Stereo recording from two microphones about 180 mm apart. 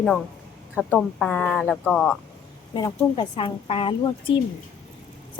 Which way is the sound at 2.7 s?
25° left (ahead or behind).